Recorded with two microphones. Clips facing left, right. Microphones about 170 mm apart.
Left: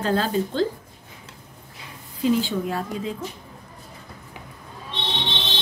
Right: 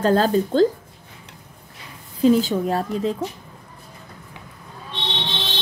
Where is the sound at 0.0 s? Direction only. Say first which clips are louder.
Right 5 dB; 45° right (ahead or behind).